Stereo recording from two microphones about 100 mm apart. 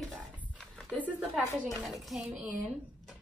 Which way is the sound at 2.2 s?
15° right (ahead or behind).